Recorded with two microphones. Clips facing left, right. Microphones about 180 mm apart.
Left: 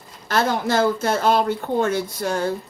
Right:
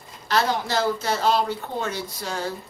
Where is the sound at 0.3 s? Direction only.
50° left (ahead or behind).